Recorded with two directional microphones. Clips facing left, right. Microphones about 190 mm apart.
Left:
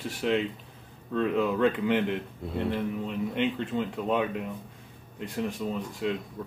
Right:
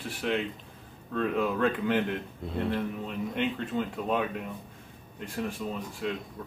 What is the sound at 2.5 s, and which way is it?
Speech, 5° left (ahead or behind).